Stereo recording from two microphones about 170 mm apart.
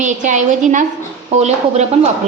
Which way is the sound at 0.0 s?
45° right (ahead or behind).